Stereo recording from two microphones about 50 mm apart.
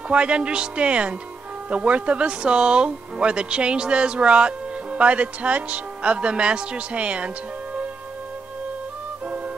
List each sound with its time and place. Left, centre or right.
0.1 s speech: right